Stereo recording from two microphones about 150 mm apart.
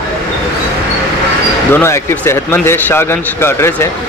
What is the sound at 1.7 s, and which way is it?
A man's voice, 15° left (ahead or behind).